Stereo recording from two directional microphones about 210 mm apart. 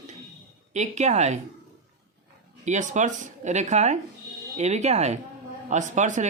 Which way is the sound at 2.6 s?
35° right (ahead or behind).